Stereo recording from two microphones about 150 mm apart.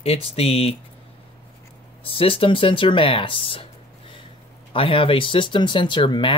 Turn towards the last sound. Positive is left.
turn(degrees=30)  # may be behind; listen again after turning